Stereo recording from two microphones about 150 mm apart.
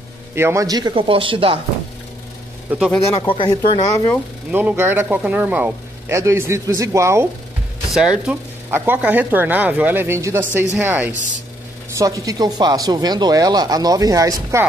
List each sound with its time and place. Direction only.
0.3 s speech: 15° right (ahead or behind); by 1.6 s 35° right (ahead or behind)
2.7 s speech: 10° right (ahead or behind)
3.2 s speech: 30° left (ahead or behind)
4.5 s speech: 10° right (ahead or behind)
7.9 s speech: 5° right (ahead or behind)
12.0 s speech: 20° right (ahead or behind)